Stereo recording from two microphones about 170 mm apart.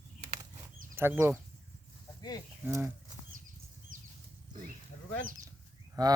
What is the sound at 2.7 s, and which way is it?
Speech, 15° right (ahead or behind).